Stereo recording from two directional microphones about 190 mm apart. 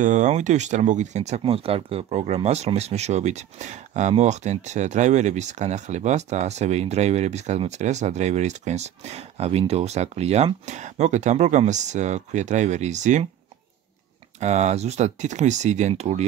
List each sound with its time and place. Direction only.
0.0 s speech: 40° right (ahead or behind)
14.4 s speech: 35° right (ahead or behind)